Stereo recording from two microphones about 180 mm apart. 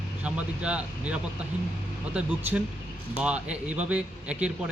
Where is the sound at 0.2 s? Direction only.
5° right (ahead or behind).